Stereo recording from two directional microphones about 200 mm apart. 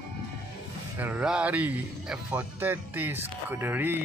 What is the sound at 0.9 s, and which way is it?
Speech, 10° right (ahead or behind).